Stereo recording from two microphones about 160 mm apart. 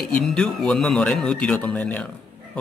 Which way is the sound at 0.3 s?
5° left (ahead or behind).